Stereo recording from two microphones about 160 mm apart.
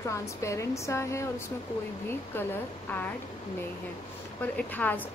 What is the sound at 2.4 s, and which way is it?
Speech, 10° left (ahead or behind).